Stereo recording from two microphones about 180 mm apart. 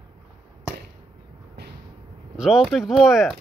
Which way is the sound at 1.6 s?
65° right (ahead or behind).